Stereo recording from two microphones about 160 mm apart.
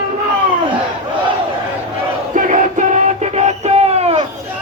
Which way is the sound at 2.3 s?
50° right (ahead or behind).